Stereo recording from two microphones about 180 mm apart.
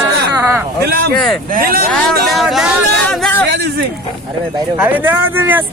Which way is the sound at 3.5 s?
60° right (ahead or behind).